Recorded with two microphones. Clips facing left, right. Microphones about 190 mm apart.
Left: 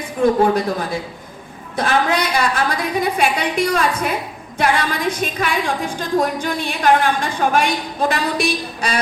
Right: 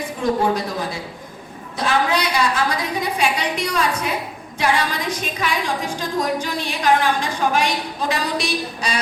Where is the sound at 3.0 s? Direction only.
50° left (ahead or behind).